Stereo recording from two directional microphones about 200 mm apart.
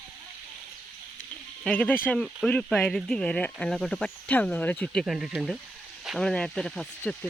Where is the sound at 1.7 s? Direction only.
5° left (ahead or behind).